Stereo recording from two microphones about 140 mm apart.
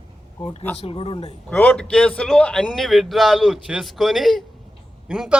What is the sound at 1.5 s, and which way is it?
A man's voice, 10° left (ahead or behind).